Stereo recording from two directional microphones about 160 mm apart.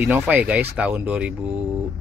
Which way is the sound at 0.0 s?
10° right (ahead or behind).